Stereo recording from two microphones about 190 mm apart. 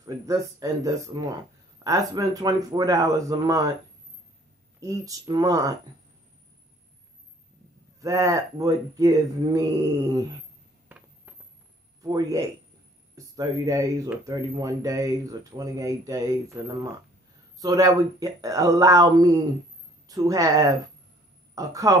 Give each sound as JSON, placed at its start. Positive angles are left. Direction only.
{"t": 0.0, "sound": "speech", "side_deg": -15}
{"t": 4.7, "sound": "speech", "side_deg": -15}
{"t": 8.0, "sound": "speech", "side_deg": -15}
{"t": 10.9, "sound": "a sound", "side_deg": -10}
{"t": 12.0, "sound": "a man's voice", "side_deg": -20}